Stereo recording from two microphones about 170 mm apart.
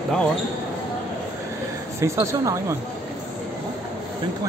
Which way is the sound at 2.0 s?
15° right (ahead or behind).